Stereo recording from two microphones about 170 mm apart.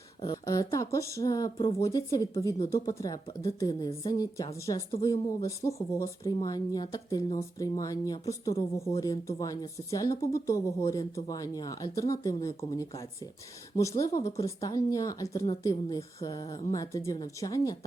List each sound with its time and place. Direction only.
0.2 s speech: 20° left (ahead or behind)
1.5 s speech: 35° left (ahead or behind)
1.8 s speech: 20° left (ahead or behind)